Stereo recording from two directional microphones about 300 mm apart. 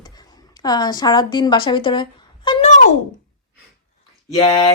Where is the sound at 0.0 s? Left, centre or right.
Centre.